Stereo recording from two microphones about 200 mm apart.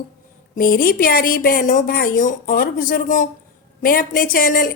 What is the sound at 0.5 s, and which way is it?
A woman's voice, 45° left (ahead or behind).